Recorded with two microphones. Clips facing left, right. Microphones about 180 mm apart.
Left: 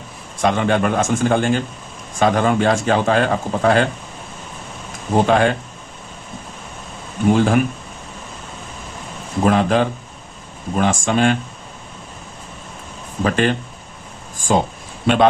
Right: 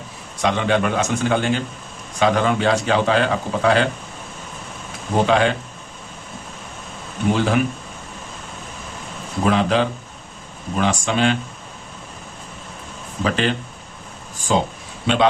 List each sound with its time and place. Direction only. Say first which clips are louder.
0.4 s a man's voice: left 2 dB; 50° left (ahead or behind)
5.2 s a man's voice: left 1 dB; 50° left (ahead or behind)
7.3 s a man's voice: left 3 dB; 45° left (ahead or behind)
9.4 s a man's voice: left 2 dB; 45° left (ahead or behind)
13.2 s a man's voice: left 3 dB; 50° left (ahead or behind)
14.3 s a sound: left 2 dB; 50° left (ahead or behind)
15.0 s a man's voice: left 3 dB; 50° left (ahead or behind)